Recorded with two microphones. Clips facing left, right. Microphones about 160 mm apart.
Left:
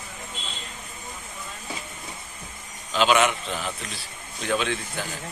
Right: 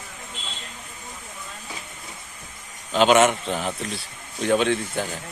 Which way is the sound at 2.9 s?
45° right (ahead or behind).